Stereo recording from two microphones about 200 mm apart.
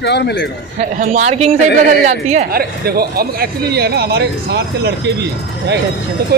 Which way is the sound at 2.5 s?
50° right (ahead or behind).